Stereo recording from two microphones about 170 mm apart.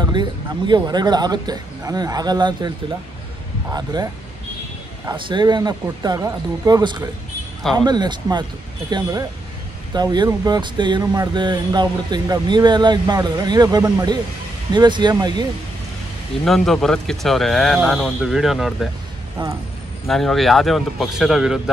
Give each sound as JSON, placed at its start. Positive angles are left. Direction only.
{"t": 0.0, "sound": "speech", "side_deg": -25}
{"t": 3.7, "sound": "speech", "side_deg": -25}
{"t": 9.9, "sound": "speech", "side_deg": -25}
{"t": 16.4, "sound": "speech", "side_deg": 0}
{"t": 19.4, "sound": "speech", "side_deg": -30}
{"t": 20.1, "sound": "speech", "side_deg": 0}